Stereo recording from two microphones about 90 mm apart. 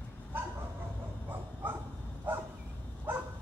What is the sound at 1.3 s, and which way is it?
Bow-wow, 25° right (ahead or behind).